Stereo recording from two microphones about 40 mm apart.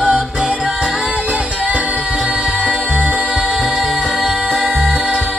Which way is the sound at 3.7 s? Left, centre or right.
Centre.